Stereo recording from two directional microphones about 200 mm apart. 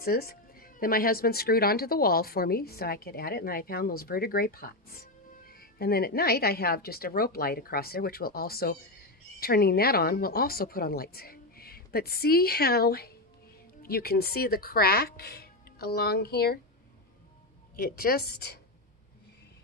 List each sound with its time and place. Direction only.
0.0 s speech: 50° left (ahead or behind)
17.7 s speech: 50° left (ahead or behind)